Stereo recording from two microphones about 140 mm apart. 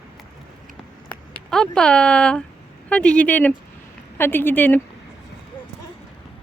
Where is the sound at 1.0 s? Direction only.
5° left (ahead or behind).